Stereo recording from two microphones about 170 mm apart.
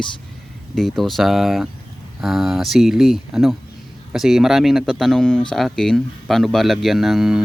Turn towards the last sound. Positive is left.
turn(degrees=0)  # may be behind; listen again after turning